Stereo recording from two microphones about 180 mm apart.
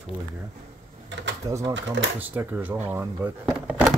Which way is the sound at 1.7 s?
90° right.